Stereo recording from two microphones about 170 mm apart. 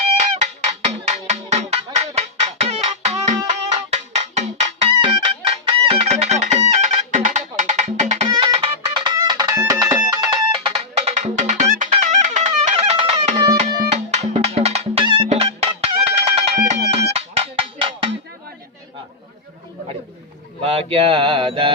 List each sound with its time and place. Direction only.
0.2 s music: 45° right (ahead or behind)
11.2 s music: 45° right (ahead or behind)
20.6 s mantra: 35° right (ahead or behind)